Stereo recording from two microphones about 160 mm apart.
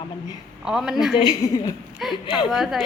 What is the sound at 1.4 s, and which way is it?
Speech, 20° left (ahead or behind).